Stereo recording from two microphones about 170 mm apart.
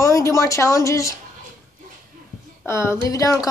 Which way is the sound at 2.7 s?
15° left (ahead or behind).